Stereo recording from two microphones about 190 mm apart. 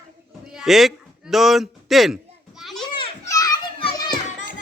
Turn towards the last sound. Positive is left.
turn(degrees=25)  # may be behind; listen again after turning